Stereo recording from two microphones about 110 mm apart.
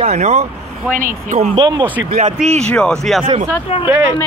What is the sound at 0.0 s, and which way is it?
Speech, 90° right.